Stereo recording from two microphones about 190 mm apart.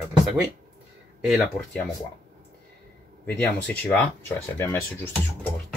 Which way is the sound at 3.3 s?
10° left (ahead or behind).